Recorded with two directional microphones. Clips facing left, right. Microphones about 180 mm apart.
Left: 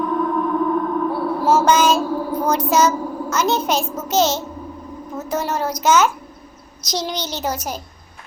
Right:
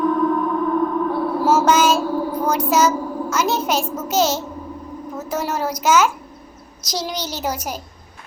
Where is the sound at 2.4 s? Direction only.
5° right (ahead or behind).